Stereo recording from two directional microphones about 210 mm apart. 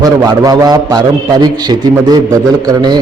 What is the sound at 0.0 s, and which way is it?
A man's voice, 15° right (ahead or behind).